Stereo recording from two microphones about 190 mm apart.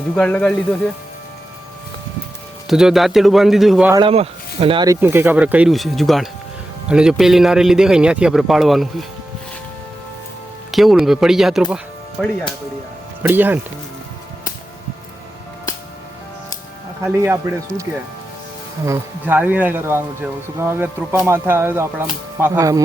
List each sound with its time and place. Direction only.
0.2 s a man's voice: 5° left (ahead or behind)
2.6 s a man's voice: centre (ahead or behind)
3.9 s speech: 30° right (ahead or behind)
4.9 s a man's voice: 10° right (ahead or behind)
10.7 s a man's voice: centre (ahead or behind)
13.2 s speech: 10° right (ahead or behind)
17.0 s speech: 10° right (ahead or behind)
18.9 s speech: 10° right (ahead or behind)